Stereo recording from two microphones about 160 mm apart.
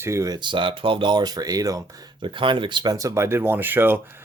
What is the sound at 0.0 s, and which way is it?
Speech, 20° right (ahead or behind).